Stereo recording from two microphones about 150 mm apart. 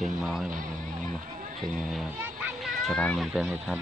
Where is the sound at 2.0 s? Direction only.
10° right (ahead or behind).